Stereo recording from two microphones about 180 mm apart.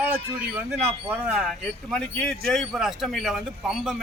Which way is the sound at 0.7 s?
10° right (ahead or behind).